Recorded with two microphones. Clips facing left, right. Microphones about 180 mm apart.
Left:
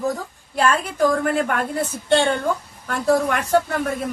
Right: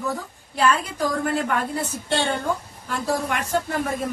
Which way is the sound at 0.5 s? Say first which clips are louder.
Left 1 dB; 50° left (ahead or behind).